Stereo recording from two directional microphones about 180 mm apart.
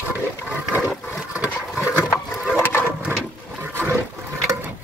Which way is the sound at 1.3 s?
10° right (ahead or behind).